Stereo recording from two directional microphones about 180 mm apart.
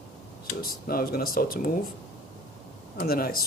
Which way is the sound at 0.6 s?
55° left (ahead or behind).